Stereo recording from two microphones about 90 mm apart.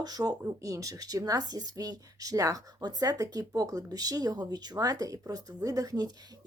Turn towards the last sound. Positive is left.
turn(degrees=-45)  # may be behind; listen again after turning